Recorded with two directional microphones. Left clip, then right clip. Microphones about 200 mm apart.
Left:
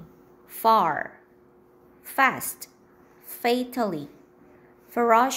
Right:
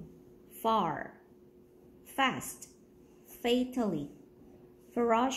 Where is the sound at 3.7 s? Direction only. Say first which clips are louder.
Left 7 dB; 20° left (ahead or behind).